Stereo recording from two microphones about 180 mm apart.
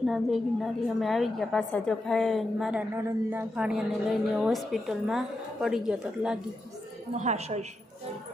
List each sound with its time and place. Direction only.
0.0 s a woman's voice: centre (ahead or behind)
3.0 s speech: 15° right (ahead or behind)
3.5 s a woman's voice: 5° right (ahead or behind)
7.2 s a woman's voice: 40° right (ahead or behind)